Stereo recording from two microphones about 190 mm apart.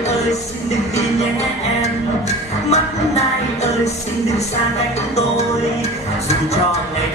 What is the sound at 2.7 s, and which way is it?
Music, 35° left (ahead or behind).